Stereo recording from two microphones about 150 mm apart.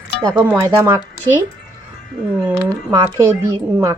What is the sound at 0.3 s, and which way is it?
Speech, 15° right (ahead or behind).